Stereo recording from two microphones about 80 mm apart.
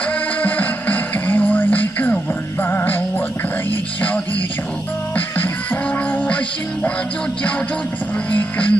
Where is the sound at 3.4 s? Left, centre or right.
Left.